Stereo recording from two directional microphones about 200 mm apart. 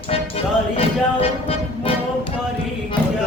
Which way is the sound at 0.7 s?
30° left (ahead or behind).